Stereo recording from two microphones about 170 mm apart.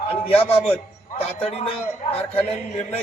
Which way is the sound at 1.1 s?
35° left (ahead or behind).